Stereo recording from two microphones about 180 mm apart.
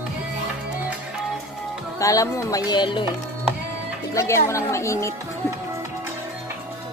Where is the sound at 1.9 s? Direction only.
20° left (ahead or behind).